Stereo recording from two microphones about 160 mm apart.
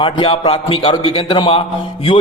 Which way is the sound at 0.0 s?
35° left (ahead or behind).